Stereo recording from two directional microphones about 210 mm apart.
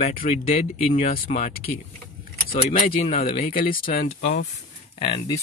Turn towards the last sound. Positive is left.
turn(degrees=25)  # may be behind; listen again after turning